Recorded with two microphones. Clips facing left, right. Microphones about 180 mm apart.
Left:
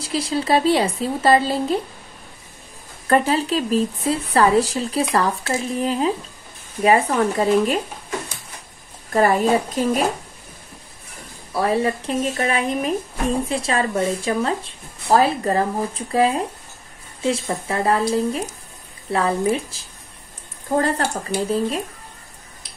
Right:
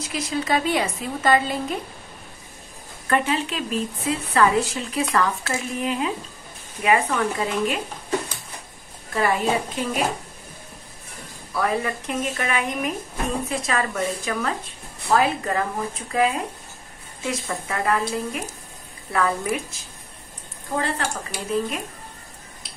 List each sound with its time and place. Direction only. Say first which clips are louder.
0.0 s a woman's voice: left 4 dB; 30° left (ahead or behind)
3.1 s a woman's voice: left 5 dB; 35° left (ahead or behind)
9.1 s a woman's voice: left 5 dB; 40° left (ahead or behind)
11.5 s a woman's voice: left 4 dB; 30° left (ahead or behind)
20.7 s a woman's voice: left 6 dB; 40° left (ahead or behind)